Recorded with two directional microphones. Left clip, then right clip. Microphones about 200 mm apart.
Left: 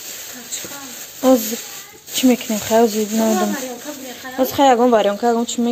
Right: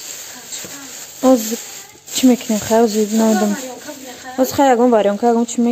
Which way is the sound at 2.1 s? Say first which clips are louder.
Right 2 dB; 25° right (ahead or behind).